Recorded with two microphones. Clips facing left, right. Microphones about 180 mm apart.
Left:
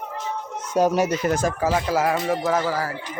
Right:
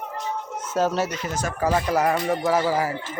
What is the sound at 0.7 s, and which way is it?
A man's voice, 15° left (ahead or behind).